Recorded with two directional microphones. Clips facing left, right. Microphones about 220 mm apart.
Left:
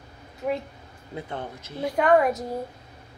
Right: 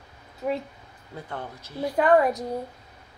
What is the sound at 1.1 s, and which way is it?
Speech, 20° left (ahead or behind).